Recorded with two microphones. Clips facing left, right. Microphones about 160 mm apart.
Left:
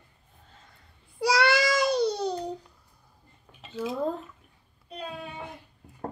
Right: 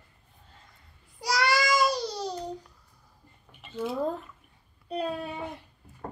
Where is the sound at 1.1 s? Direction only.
60° left (ahead or behind).